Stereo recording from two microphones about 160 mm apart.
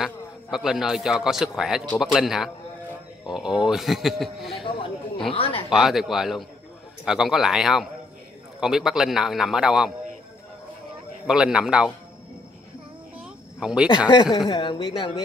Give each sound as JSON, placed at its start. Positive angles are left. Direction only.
{"t": 0.0, "sound": "a man's voice", "side_deg": -5}
{"t": 4.6, "sound": "speech", "side_deg": 35}
{"t": 5.7, "sound": "speech", "side_deg": 0}
{"t": 11.2, "sound": "speech", "side_deg": -5}
{"t": 13.2, "sound": "a sound", "side_deg": -5}
{"t": 14.5, "sound": "speech", "side_deg": 30}